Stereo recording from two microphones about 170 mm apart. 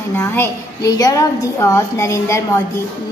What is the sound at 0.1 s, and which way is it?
A woman's voice, 15° left (ahead or behind).